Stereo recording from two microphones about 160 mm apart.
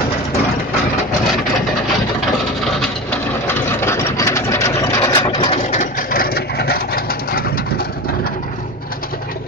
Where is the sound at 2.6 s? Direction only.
5° left (ahead or behind); by 5.6 s 30° left (ahead or behind).